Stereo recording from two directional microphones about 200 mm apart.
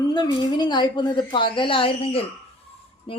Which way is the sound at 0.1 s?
20° left (ahead or behind).